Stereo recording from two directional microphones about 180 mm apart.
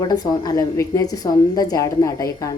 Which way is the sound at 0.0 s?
20° left (ahead or behind).